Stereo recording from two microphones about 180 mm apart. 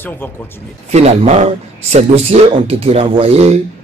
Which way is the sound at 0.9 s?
40° right (ahead or behind).